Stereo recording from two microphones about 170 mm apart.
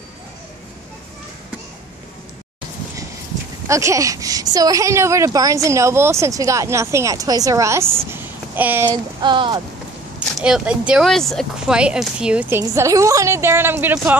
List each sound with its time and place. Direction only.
3.6 s a woman's voice: 20° right (ahead or behind)
8.8 s a sound: 25° right (ahead or behind)
10.4 s a woman's voice: 5° right (ahead or behind)